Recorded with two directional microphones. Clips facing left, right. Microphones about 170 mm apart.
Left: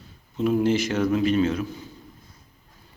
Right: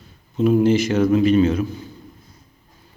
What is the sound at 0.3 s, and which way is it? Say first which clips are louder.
Speech: right 5 dB; 10° right (ahead or behind).